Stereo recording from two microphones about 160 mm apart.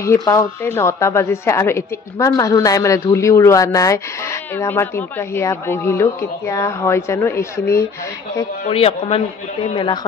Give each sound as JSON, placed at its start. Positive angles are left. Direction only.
{"t": 0.0, "sound": "speech", "side_deg": 20}
{"t": 8.6, "sound": "speech", "side_deg": 40}